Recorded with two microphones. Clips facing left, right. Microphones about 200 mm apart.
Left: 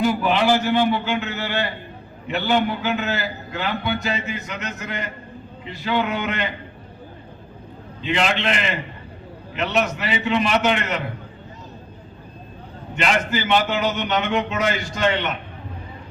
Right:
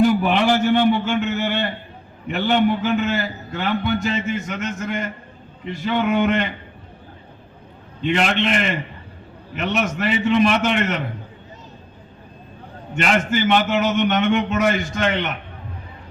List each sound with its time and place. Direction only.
0.0 s a man's voice: 50° right (ahead or behind)
8.0 s a man's voice: 50° right (ahead or behind)
12.9 s a man's voice: 45° right (ahead or behind)